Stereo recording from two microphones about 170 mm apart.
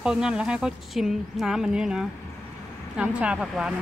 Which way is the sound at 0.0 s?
5° right (ahead or behind).